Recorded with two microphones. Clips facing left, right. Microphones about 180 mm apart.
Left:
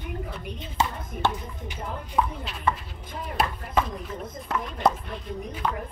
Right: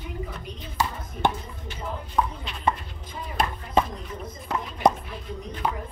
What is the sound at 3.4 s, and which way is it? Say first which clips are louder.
Speech: right 2 dB; 5° left (ahead or behind).